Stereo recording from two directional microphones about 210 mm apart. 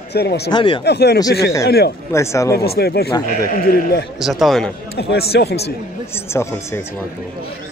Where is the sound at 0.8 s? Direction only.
50° left (ahead or behind).